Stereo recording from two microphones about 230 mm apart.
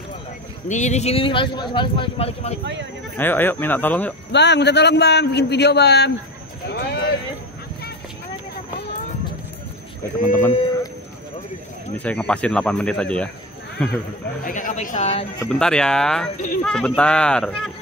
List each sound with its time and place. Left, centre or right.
0.7 s a man's voice: left
2.6 s speech: right
3.2 s speech: centre
4.3 s a man's voice: left
10.5 s a man's voice: centre
12.0 s speech: centre
14.4 s speech: left
15.4 s speech: centre